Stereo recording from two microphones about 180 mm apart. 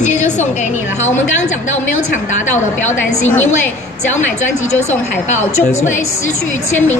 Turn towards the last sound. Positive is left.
turn(degrees=40)  # may be behind; listen again after turning